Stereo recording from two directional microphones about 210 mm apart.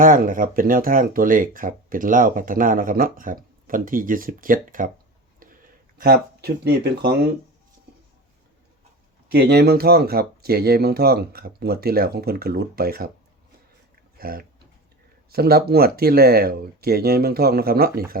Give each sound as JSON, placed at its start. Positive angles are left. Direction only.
{"t": 0.0, "sound": "speech", "side_deg": -40}
{"t": 5.4, "sound": "a sound", "side_deg": -40}
{"t": 9.3, "sound": "speech", "side_deg": -50}
{"t": 14.2, "sound": "speech", "side_deg": -45}